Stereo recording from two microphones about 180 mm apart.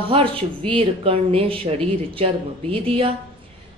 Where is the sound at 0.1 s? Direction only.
30° right (ahead or behind).